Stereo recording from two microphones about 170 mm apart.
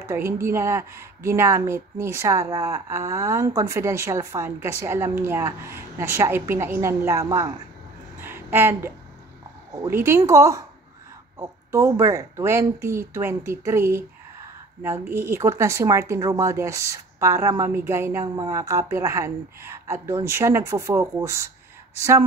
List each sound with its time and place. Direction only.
0.1 s a woman's voice: 15° right (ahead or behind)
8.2 s a sound: 10° right (ahead or behind)
9.8 s a woman's voice: 15° right (ahead or behind)